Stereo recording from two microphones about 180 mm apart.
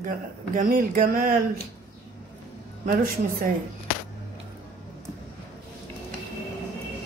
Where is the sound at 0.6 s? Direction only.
50° right (ahead or behind).